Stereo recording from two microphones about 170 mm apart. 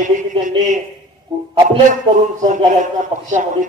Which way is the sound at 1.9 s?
45° right (ahead or behind).